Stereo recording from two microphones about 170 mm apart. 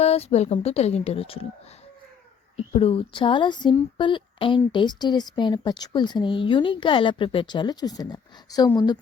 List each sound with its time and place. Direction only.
0.0 s a woman's voice: 35° left (ahead or behind)
2.7 s a woman's voice: 35° left (ahead or behind)